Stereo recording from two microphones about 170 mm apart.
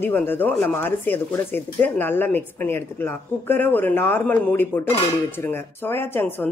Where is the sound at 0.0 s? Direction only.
10° left (ahead or behind).